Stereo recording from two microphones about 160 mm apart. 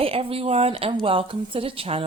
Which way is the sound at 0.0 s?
35° right (ahead or behind).